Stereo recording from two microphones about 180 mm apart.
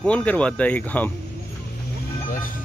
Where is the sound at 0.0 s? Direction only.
5° left (ahead or behind).